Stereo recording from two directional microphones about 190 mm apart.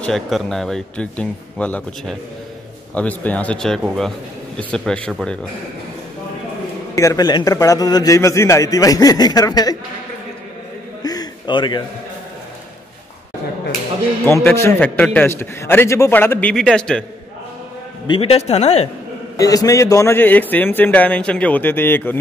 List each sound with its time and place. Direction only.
0.0 s speech: centre (ahead or behind)
7.0 s a man's voice: 20° left (ahead or behind)
11.1 s a sound: 20° left (ahead or behind)
14.2 s a man's voice: 10° left (ahead or behind)
18.0 s speech: 30° left (ahead or behind)
19.3 s a man's voice: 20° left (ahead or behind)